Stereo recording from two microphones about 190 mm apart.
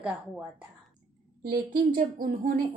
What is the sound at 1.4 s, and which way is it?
Speech, 50° right (ahead or behind).